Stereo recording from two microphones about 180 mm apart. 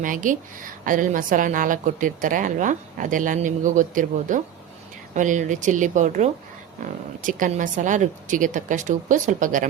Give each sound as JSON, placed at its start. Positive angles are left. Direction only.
{"t": 0.0, "sound": "a woman's voice", "side_deg": -45}